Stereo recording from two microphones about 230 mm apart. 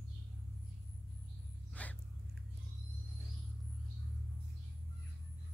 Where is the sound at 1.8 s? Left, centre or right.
Centre.